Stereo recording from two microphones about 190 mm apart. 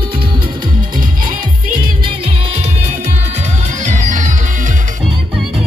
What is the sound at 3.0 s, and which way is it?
Music, 35° right (ahead or behind).